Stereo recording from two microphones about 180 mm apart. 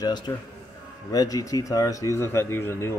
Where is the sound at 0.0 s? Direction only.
25° left (ahead or behind).